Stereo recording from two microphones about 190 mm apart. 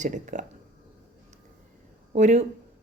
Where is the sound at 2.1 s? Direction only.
35° right (ahead or behind).